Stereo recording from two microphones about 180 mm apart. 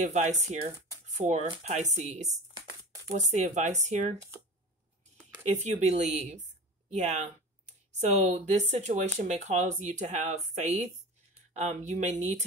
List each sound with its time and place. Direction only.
0.0 s speech: 40° right (ahead or behind)
5.5 s speech: 40° right (ahead or behind)